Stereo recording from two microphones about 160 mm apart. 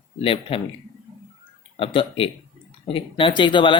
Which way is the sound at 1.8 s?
35° left (ahead or behind).